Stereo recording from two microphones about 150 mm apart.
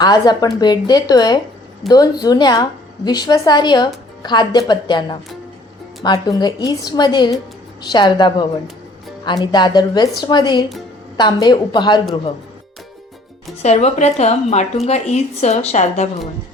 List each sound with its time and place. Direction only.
0.0 s a woman's voice: 30° left (ahead or behind)
13.6 s speech: 45° left (ahead or behind)